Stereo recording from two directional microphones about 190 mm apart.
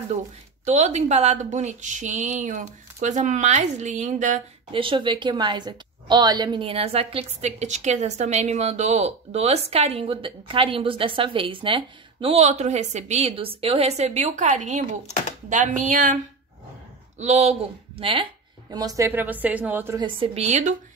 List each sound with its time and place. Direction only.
0.7 s a woman's voice: 35° right (ahead or behind)
4.7 s a woman's voice: 25° right (ahead or behind); by 16.2 s 40° right (ahead or behind)
17.2 s speech: 35° right (ahead or behind); by 20.0 s 10° right (ahead or behind)
20.0 s a woman's voice: 30° right (ahead or behind)